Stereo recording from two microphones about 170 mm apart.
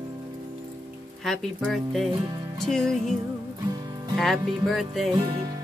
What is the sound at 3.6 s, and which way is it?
Music, 20° right (ahead or behind).